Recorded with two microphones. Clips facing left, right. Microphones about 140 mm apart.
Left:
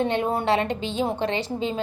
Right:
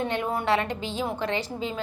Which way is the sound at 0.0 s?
25° left (ahead or behind).